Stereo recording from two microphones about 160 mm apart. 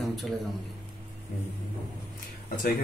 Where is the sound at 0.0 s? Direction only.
Centre (ahead or behind).